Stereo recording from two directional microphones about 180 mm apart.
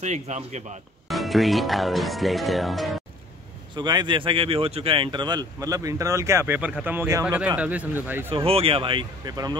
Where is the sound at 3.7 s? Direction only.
25° right (ahead or behind).